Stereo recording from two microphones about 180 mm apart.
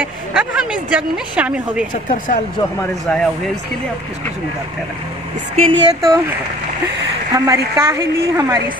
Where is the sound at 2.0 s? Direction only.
45° left (ahead or behind).